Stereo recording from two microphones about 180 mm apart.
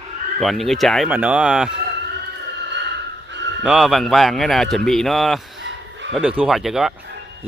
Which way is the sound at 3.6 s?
Centre (ahead or behind).